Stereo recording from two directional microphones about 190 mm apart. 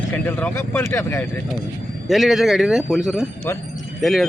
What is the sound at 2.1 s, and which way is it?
Speech, centre (ahead or behind).